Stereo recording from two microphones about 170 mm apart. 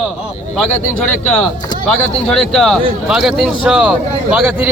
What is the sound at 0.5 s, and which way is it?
A man's voice, 10° left (ahead or behind).